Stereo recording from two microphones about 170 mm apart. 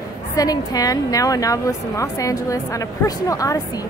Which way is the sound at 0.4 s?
20° left (ahead or behind).